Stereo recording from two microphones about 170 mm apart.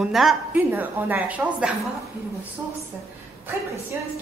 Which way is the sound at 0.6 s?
10° right (ahead or behind).